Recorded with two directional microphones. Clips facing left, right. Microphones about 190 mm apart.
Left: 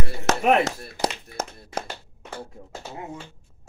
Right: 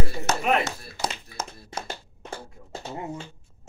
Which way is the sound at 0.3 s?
90° left.